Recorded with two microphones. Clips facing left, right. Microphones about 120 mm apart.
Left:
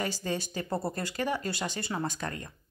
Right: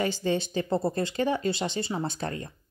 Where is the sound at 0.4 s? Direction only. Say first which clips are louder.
Right 6 dB; 25° right (ahead or behind).